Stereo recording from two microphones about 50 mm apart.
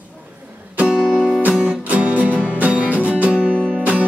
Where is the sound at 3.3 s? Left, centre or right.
Centre.